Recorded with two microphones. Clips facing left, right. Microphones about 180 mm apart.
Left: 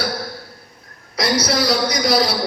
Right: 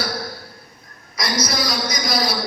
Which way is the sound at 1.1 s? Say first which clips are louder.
Left 5 dB; 70° left (ahead or behind).